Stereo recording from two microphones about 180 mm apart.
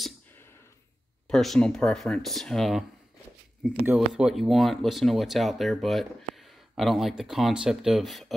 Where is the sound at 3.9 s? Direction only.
5° right (ahead or behind).